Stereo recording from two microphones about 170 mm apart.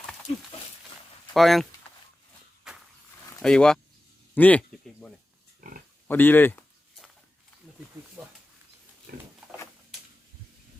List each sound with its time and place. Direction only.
1.3 s speech: centre (ahead or behind)
1.9 s a sound: 35° left (ahead or behind)
3.4 s speech: 5° left (ahead or behind)
4.4 s sheep: 10° left (ahead or behind)
5.5 s pig: 55° right (ahead or behind)
6.1 s speech: 10° left (ahead or behind)
8.2 s wild animals: 5° right (ahead or behind)
9.1 s a sound: 65° right (ahead or behind)